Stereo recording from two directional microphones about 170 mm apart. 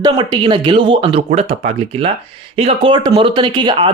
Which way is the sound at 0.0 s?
25° right (ahead or behind).